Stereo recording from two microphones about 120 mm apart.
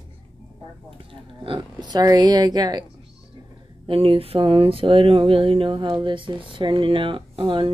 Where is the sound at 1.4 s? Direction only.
40° right (ahead or behind).